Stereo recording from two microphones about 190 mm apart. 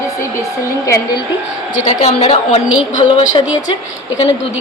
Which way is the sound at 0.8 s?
15° left (ahead or behind).